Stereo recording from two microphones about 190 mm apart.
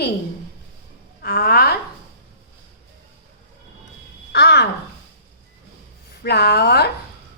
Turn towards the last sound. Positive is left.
turn(degrees=60)  # may be behind; listen again after turning